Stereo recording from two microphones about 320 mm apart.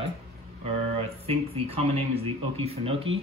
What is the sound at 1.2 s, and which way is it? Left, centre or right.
Speech, centre.